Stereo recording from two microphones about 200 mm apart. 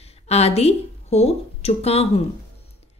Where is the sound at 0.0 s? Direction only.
30° left (ahead or behind).